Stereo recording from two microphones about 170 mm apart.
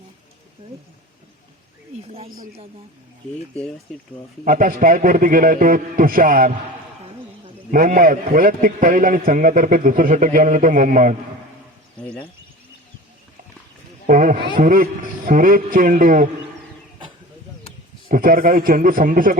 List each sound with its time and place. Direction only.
4.4 s a man's voice: 55° right (ahead or behind)
7.7 s a man's voice: 55° right (ahead or behind)
11.9 s speech: 5° left (ahead or behind)
14.1 s a sound: 50° right (ahead or behind)
14.6 s a man's voice: 55° right (ahead or behind)
18.1 s a man's voice: 55° right (ahead or behind)